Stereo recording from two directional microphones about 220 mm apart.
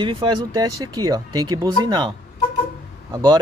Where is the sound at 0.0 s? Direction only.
25° right (ahead or behind).